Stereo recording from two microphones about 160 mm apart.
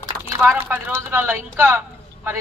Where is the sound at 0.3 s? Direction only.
15° right (ahead or behind).